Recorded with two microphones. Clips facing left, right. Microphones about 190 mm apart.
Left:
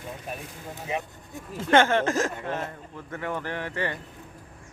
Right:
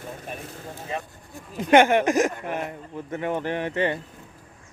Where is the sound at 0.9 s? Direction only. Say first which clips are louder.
Left 2 dB; 20° left (ahead or behind).